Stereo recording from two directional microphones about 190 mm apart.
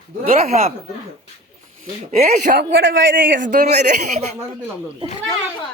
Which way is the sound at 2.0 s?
40° right (ahead or behind).